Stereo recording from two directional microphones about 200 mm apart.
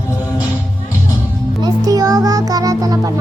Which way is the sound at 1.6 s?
20° right (ahead or behind).